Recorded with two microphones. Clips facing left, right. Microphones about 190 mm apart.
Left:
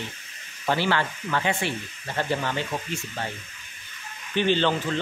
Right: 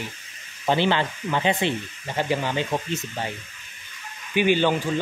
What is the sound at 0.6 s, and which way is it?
Speech, 20° right (ahead or behind).